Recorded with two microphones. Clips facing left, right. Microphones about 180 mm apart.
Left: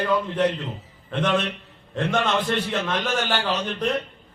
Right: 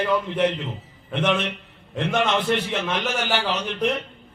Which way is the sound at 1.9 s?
10° right (ahead or behind).